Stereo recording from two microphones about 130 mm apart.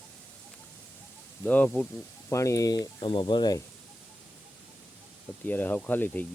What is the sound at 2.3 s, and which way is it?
Speech, 25° left (ahead or behind).